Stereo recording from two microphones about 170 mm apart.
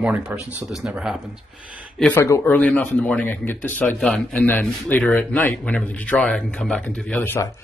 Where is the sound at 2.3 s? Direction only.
10° left (ahead or behind).